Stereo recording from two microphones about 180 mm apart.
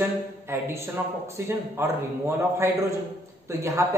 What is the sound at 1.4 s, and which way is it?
A man's voice, 15° right (ahead or behind).